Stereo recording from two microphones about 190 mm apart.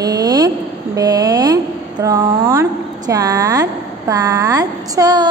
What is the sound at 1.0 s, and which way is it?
A woman's voice, 20° right (ahead or behind).